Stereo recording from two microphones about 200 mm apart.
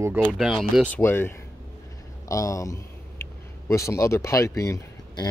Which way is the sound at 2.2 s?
15° left (ahead or behind).